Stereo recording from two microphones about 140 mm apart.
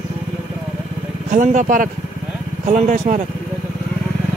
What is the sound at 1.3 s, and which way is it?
Speech, 65° right (ahead or behind).